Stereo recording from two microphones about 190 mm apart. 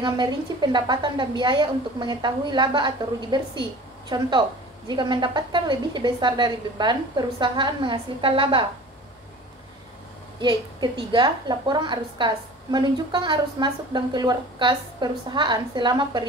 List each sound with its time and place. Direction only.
0.0 s a woman's voice: 25° right (ahead or behind)
10.4 s a woman's voice: 25° right (ahead or behind)